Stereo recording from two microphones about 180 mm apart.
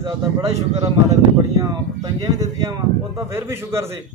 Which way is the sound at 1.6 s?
20° right (ahead or behind).